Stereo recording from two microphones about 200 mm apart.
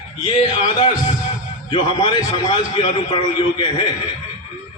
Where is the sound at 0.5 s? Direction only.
25° left (ahead or behind).